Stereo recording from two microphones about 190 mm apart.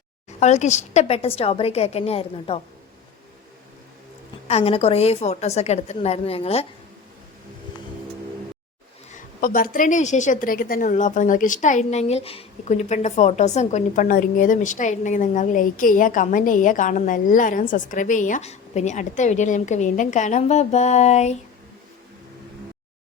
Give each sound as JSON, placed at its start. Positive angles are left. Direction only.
{"t": 0.3, "sound": "a woman's voice", "side_deg": 35}
{"t": 4.4, "sound": "a woman's voice", "side_deg": 30}
{"t": 9.4, "sound": "a woman's voice", "side_deg": 45}